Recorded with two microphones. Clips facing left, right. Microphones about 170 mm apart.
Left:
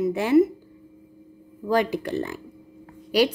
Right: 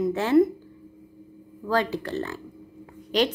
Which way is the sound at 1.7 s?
15° left (ahead or behind).